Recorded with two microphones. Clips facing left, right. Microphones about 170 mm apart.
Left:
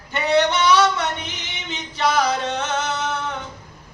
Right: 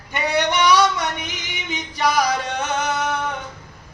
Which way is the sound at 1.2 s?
10° right (ahead or behind).